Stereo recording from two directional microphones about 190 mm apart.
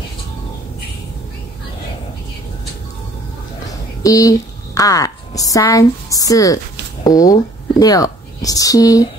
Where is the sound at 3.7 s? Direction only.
20° left (ahead or behind).